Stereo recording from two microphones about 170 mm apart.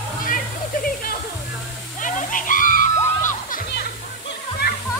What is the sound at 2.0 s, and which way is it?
Music, 50° left (ahead or behind).